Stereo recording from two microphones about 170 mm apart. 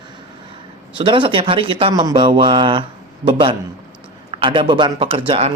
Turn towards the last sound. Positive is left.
turn(degrees=-40)  # may be behind; listen again after turning